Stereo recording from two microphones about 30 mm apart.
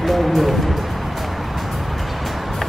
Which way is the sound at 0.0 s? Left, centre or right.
Centre.